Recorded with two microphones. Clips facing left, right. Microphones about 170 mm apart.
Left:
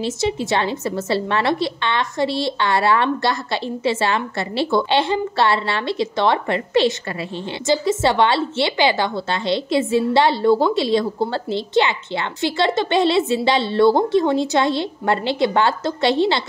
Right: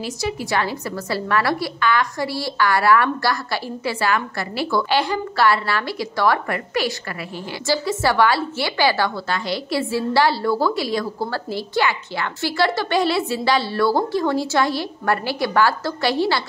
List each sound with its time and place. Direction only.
0.0 s a woman's voice: 25° left (ahead or behind)